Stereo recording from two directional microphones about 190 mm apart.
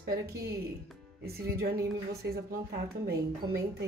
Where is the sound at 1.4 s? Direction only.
55° right (ahead or behind).